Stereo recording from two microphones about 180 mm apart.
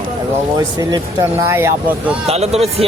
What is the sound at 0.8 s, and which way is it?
Speech, 20° right (ahead or behind).